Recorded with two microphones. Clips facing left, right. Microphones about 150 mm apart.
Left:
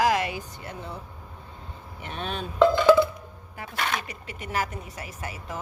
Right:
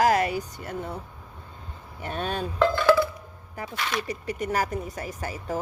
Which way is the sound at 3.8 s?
55° left (ahead or behind).